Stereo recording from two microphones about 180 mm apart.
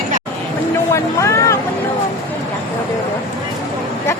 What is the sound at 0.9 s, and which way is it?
Speech, 15° left (ahead or behind).